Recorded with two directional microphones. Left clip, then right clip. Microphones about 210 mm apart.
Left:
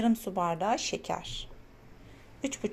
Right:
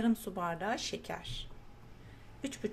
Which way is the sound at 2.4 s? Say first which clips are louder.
Left 5 dB; 10° left (ahead or behind).